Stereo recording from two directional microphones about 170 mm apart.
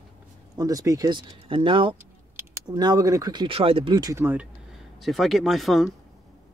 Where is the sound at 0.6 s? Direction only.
20° right (ahead or behind).